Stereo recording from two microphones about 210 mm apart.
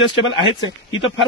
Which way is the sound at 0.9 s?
65° left (ahead or behind).